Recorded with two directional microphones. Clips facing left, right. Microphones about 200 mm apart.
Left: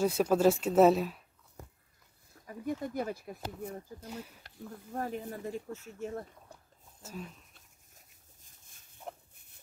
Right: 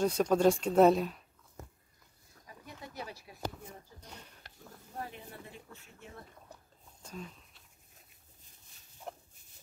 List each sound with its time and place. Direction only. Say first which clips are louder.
0.0 s speech: left 1 dB; 5° left (ahead or behind)
2.4 s speech: left 14 dB; 50° left (ahead or behind)
4.0 s speech: left 10 dB; 5° left (ahead or behind)
4.9 s speech: left 7 dB; 45° left (ahead or behind)
7.0 s speech: left 2 dB; 5° left (ahead or behind)
9.3 s pig: even; 60° left (ahead or behind)